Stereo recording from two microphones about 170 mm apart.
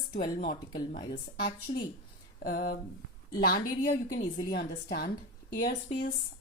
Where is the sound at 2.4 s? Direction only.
60° left (ahead or behind).